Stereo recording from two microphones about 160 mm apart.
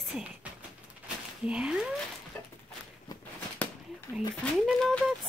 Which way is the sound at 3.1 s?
25° left (ahead or behind).